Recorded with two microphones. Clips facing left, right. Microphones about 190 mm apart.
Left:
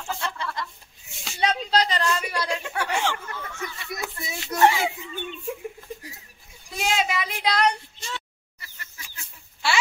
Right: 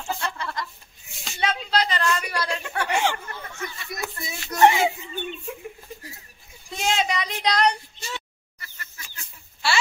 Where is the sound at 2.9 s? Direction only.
15° right (ahead or behind).